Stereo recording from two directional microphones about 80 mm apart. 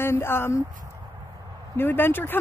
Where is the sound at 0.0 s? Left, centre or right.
Left.